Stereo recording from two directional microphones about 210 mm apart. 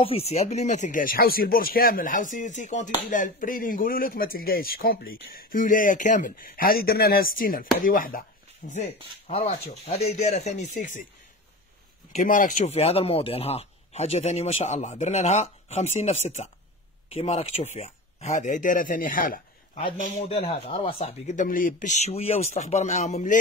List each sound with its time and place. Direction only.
0.3 s speech: 30° left (ahead or behind)
10.1 s speech: 35° left (ahead or behind)
12.1 s speech: 40° left (ahead or behind)